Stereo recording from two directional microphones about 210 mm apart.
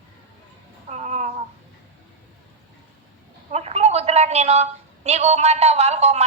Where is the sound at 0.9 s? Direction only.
30° right (ahead or behind).